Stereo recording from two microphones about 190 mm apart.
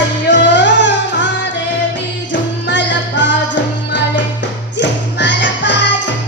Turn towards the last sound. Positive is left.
turn(degrees=70)  # may be behind; listen again after turning